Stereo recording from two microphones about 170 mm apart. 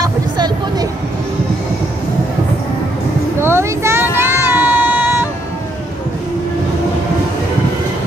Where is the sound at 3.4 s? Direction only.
15° right (ahead or behind).